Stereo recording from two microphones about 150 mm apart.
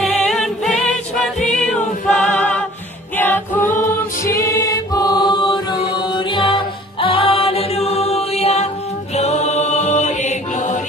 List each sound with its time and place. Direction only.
0.0 s music: centre (ahead or behind)
4.2 s music: 20° left (ahead or behind); by 8.6 s 45° left (ahead or behind)
9.1 s chant: 45° left (ahead or behind)